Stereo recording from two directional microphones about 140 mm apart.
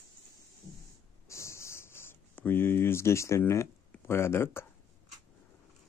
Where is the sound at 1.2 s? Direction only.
20° left (ahead or behind).